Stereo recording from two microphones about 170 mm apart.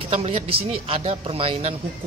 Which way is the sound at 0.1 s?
35° right (ahead or behind).